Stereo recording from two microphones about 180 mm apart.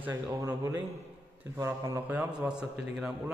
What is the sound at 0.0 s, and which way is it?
A man's voice, 15° right (ahead or behind).